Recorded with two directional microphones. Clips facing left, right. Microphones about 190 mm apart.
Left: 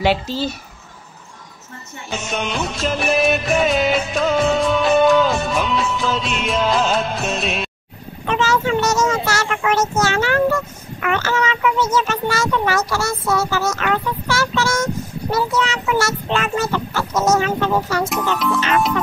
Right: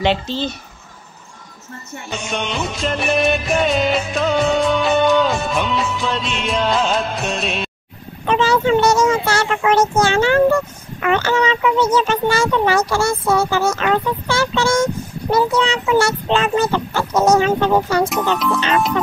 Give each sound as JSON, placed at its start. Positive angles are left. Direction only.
{"t": 0.0, "sound": "speech", "side_deg": 5}
{"t": 2.0, "sound": "music", "side_deg": 0}
{"t": 8.3, "sound": "a child's voice", "side_deg": -30}